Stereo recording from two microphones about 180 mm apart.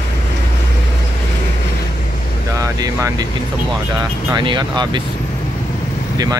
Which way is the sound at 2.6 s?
20° right (ahead or behind).